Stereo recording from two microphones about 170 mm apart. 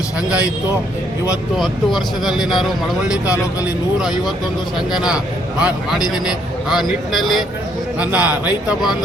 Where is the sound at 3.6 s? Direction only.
5° right (ahead or behind).